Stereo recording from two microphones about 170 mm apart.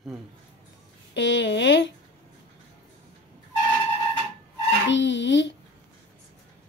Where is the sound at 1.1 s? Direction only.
90° left.